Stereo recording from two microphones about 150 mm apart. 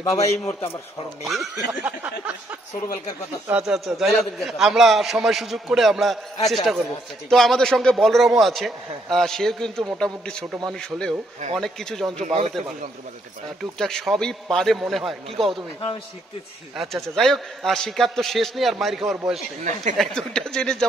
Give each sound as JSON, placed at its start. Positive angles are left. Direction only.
{"t": 1.2, "sound": "a man's voice", "side_deg": 0}
{"t": 3.4, "sound": "a man's voice", "side_deg": -5}
{"t": 12.3, "sound": "speech", "side_deg": -40}
{"t": 13.6, "sound": "a man's voice", "side_deg": 5}
{"t": 16.7, "sound": "a man's voice", "side_deg": 0}
{"t": 19.6, "sound": "speech", "side_deg": -55}
{"t": 20.0, "sound": "a man's voice", "side_deg": 5}